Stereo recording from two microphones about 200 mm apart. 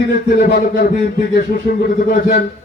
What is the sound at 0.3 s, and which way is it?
A man's voice, 50° left (ahead or behind).